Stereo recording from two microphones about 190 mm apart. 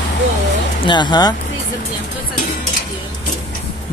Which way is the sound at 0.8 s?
20° left (ahead or behind).